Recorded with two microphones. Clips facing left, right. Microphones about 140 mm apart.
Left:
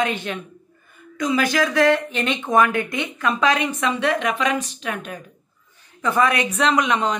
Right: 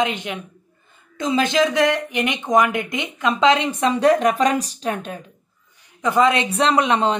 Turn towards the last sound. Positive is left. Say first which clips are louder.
# right 2 dB
turn(degrees=-30)  # may be behind; listen again after turning